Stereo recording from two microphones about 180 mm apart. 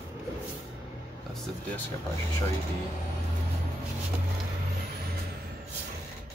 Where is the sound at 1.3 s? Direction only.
Centre (ahead or behind).